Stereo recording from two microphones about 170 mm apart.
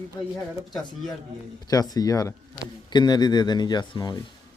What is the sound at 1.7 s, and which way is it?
A man's voice, 20° left (ahead or behind).